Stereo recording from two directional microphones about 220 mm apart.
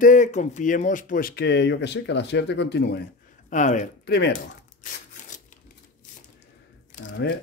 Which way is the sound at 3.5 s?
35° left (ahead or behind).